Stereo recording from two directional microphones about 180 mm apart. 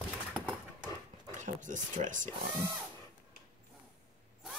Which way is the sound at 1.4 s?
45° right (ahead or behind).